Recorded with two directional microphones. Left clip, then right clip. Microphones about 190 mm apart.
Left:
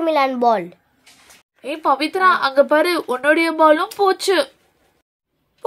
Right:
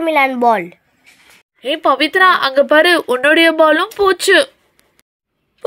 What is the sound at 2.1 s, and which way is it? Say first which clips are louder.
Speech: right 3 dB; 20° right (ahead or behind).